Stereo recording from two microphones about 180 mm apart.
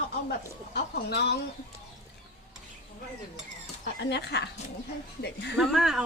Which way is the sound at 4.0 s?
75° left (ahead or behind).